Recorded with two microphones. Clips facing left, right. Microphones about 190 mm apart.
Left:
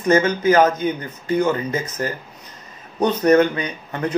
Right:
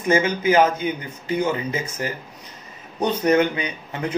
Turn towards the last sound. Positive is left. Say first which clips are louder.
# left 2 dB
turn(degrees=-10)  # may be behind; listen again after turning